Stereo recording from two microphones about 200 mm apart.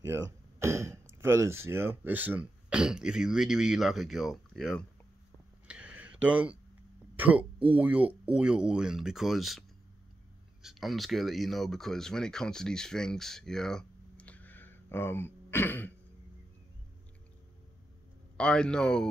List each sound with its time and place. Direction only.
0.0 s speech: 15° right (ahead or behind)
5.7 s a sound: 5° right (ahead or behind)
7.2 s speech: 5° right (ahead or behind); by 15.9 s 10° left (ahead or behind)
18.4 s speech: 5° left (ahead or behind)